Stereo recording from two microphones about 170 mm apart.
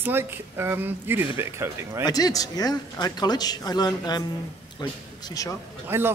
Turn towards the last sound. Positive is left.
turn(degrees=-15)  # may be behind; listen again after turning